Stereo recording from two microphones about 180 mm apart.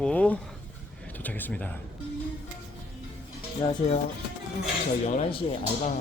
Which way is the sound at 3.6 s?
20° left (ahead or behind).